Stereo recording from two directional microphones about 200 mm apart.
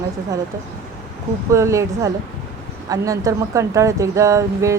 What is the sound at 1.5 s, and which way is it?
Speech, 15° right (ahead or behind).